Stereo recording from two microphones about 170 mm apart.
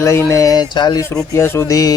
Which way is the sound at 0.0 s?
15° left (ahead or behind).